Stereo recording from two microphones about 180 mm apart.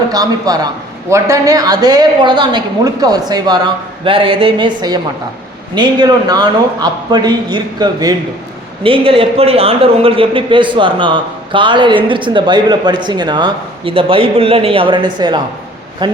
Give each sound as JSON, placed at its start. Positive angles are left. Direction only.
{"t": 0.1, "sound": "a man's voice", "side_deg": -20}